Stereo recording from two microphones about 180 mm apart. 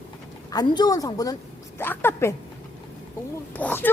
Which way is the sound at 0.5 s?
25° left (ahead or behind).